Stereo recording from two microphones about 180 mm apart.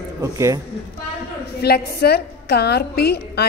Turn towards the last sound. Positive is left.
turn(degrees=65)  # may be behind; listen again after turning